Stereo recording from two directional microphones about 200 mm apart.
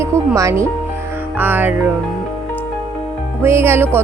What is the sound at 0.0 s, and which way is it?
Speech, 15° right (ahead or behind).